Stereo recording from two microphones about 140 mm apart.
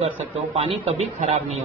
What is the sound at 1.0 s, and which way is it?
Speech, 50° right (ahead or behind).